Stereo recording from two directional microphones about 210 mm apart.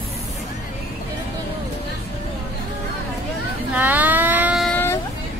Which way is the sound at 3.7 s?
10° right (ahead or behind).